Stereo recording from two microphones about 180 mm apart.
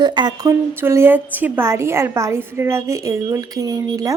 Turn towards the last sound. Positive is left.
turn(degrees=-20)  # may be behind; listen again after turning